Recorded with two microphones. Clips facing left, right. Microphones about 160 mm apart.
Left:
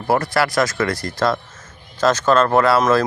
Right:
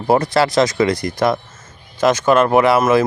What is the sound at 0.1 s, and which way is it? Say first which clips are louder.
Speech: right 4 dB; 20° right (ahead or behind).